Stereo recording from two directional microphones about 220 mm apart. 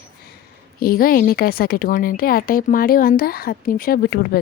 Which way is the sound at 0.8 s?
40° left (ahead or behind).